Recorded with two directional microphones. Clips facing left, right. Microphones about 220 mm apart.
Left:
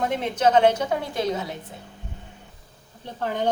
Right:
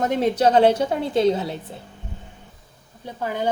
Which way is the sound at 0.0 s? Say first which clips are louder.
Right 3 dB; 40° right (ahead or behind).